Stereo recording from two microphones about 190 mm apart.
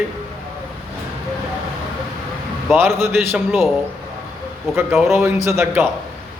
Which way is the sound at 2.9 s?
Centre (ahead or behind).